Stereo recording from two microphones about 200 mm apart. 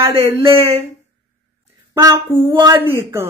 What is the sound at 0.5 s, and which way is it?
Speech, 30° right (ahead or behind).